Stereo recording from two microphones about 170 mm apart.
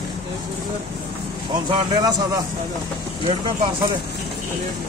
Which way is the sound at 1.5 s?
25° right (ahead or behind).